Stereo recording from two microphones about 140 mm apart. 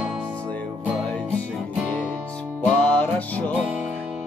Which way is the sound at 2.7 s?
10° left (ahead or behind).